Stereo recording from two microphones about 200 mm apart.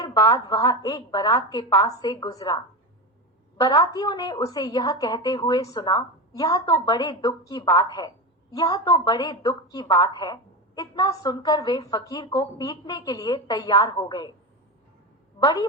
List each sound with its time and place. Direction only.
0.0 s a woman's voice: 15° left (ahead or behind)
3.6 s a woman's voice: 20° left (ahead or behind)